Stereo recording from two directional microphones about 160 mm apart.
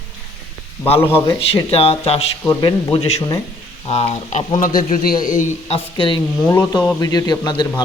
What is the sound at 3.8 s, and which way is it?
Speech, 40° left (ahead or behind).